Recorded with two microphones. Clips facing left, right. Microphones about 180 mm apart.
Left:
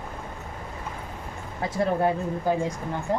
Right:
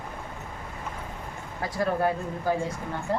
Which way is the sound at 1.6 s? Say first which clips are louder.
Left 2 dB; 20° left (ahead or behind).